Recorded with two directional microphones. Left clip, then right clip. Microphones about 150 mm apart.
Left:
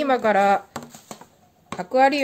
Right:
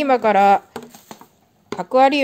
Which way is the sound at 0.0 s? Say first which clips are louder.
Right 4 dB; 20° right (ahead or behind).